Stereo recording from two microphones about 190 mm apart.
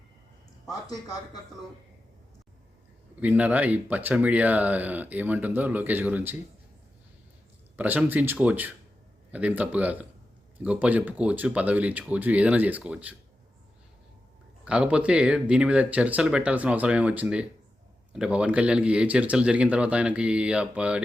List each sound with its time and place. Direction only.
0.9 s speech: 20° left (ahead or behind)
3.2 s speech: 10° right (ahead or behind)
7.8 s speech: 10° right (ahead or behind)
14.6 s speech: 5° right (ahead or behind)